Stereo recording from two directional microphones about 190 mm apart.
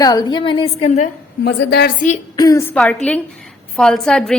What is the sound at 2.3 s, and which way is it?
A woman's voice, 20° left (ahead or behind).